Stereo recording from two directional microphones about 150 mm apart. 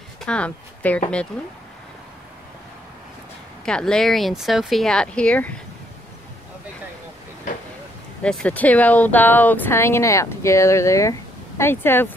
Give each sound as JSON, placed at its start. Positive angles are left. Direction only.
{"t": 0.2, "sound": "speech", "side_deg": 5}
{"t": 3.6, "sound": "speech", "side_deg": 5}
{"t": 8.2, "sound": "speech", "side_deg": 5}